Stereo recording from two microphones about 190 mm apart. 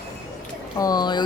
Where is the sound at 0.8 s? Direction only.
20° left (ahead or behind).